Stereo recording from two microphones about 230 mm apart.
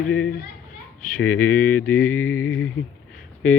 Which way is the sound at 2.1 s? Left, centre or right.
Left.